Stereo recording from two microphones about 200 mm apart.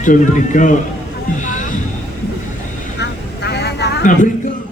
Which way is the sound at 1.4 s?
40° left (ahead or behind).